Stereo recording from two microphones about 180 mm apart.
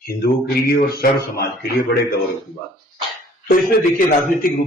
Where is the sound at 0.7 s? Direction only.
60° left (ahead or behind).